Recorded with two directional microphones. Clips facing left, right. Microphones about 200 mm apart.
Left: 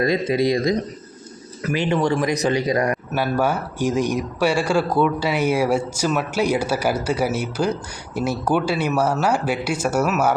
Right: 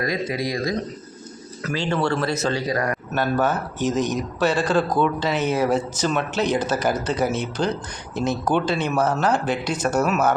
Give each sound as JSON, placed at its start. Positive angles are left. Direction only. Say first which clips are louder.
{"t": 0.0, "sound": "speech", "louder": "left 6 dB", "side_deg": 25}